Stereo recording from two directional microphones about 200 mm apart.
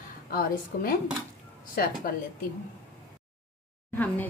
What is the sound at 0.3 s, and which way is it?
A woman's voice, 45° left (ahead or behind).